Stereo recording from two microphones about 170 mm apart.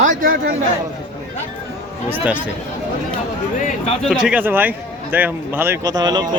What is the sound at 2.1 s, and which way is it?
Speech, 10° right (ahead or behind).